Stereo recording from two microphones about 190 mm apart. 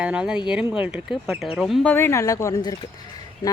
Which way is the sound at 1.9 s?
15° left (ahead or behind).